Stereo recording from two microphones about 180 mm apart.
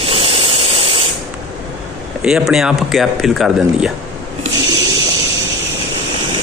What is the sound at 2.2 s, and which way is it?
Speech, 5° right (ahead or behind).